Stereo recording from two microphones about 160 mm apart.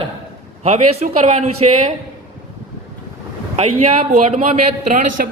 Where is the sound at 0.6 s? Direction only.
45° right (ahead or behind).